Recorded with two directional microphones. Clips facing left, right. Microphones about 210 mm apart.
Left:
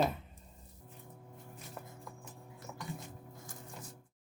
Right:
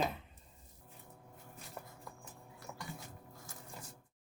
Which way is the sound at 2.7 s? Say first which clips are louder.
Left 1 dB; centre (ahead or behind).